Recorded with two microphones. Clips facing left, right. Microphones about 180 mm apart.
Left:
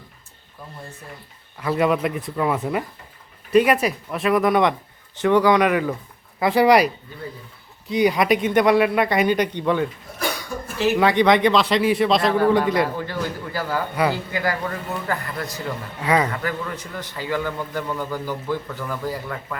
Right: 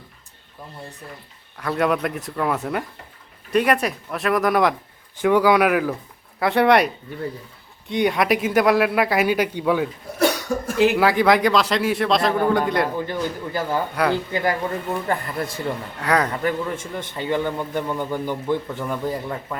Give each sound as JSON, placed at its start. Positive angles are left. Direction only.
{"t": 1.5, "sound": "speech", "side_deg": 0}
{"t": 12.9, "sound": "a man's voice", "side_deg": -15}
{"t": 13.9, "sound": "speech", "side_deg": 5}
{"t": 14.3, "sound": "a man's voice", "side_deg": -25}
{"t": 16.0, "sound": "speech", "side_deg": 5}
{"t": 16.3, "sound": "a man's voice", "side_deg": -25}